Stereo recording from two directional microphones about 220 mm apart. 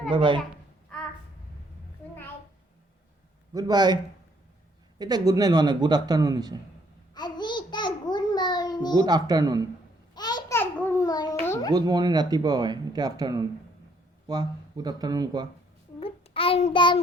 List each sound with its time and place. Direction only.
0.1 s speech: 20° right (ahead or behind)
3.5 s a man's voice: 15° right (ahead or behind)
4.9 s a man's voice: 20° right (ahead or behind)
7.1 s babbling: 20° left (ahead or behind)
9.0 s a man's voice: 15° right (ahead or behind)
10.2 s babbling: 20° left (ahead or behind)
11.7 s a man's voice: 20° right (ahead or behind)
16.0 s child singing: 25° left (ahead or behind)